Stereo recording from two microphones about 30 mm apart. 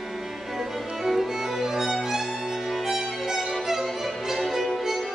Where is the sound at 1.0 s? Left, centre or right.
Centre.